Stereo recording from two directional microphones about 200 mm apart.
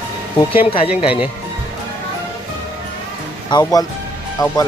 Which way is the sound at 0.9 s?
5° right (ahead or behind).